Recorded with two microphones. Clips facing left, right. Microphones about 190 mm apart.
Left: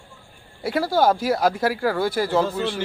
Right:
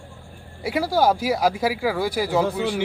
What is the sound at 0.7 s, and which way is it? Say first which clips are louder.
A man's voice: left 1 dB; 10° right (ahead or behind).